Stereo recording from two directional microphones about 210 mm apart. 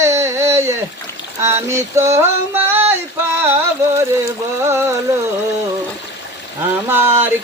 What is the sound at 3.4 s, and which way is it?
Speech, 10° right (ahead or behind).